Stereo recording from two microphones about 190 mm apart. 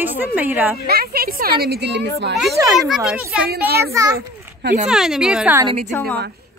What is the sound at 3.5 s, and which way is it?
Speech, 55° right (ahead or behind).